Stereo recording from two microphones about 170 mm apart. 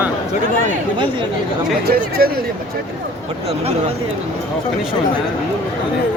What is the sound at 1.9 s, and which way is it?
Speech, 65° right (ahead or behind).